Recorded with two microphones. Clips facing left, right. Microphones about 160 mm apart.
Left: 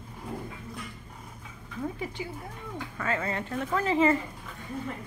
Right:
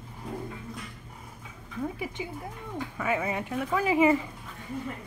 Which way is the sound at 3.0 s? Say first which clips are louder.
Right 2 dB; 10° right (ahead or behind).